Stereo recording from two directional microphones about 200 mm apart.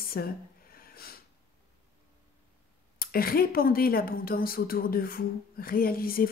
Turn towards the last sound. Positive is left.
turn(degrees=45)  # may be behind; listen again after turning